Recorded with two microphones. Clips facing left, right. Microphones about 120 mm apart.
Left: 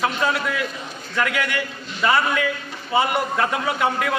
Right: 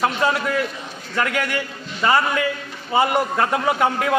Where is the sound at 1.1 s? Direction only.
40° right (ahead or behind).